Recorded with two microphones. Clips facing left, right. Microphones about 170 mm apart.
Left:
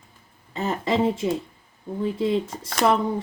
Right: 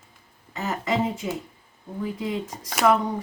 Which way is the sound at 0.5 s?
30° left (ahead or behind).